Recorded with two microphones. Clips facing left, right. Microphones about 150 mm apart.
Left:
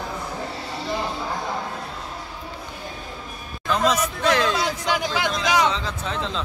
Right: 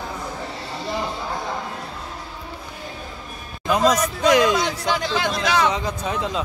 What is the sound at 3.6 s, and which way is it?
Music, 10° right (ahead or behind).